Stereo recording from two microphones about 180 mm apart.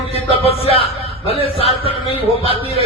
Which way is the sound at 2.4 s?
30° right (ahead or behind).